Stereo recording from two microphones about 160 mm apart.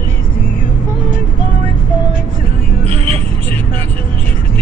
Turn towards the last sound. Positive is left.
turn(degrees=-40)  # may be behind; listen again after turning